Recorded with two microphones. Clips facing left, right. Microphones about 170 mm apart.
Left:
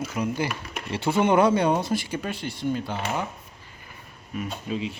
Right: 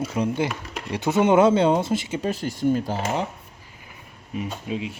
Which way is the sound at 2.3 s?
40° right (ahead or behind).